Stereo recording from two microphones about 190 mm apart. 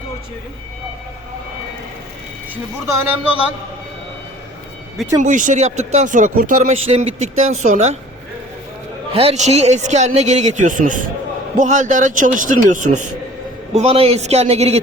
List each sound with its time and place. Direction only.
2.8 s speech: 10° right (ahead or behind)
5.2 s a man's voice: 40° right (ahead or behind)
9.1 s a man's voice: 35° right (ahead or behind)
13.7 s a man's voice: 30° right (ahead or behind)